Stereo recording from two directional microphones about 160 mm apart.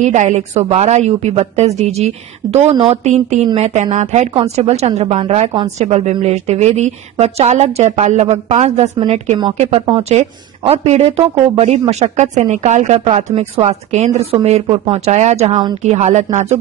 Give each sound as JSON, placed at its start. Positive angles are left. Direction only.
{"t": 0.0, "sound": "speech", "side_deg": -50}